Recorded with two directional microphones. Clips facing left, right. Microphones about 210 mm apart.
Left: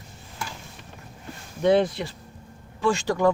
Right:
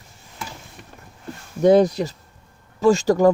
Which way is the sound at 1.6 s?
40° right (ahead or behind).